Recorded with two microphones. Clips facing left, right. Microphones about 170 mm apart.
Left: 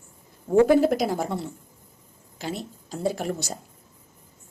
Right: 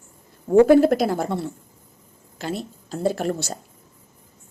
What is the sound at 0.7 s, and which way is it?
Speech, 15° left (ahead or behind).